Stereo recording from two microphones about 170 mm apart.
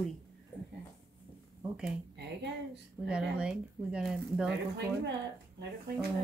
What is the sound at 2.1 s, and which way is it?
Speech, 85° right.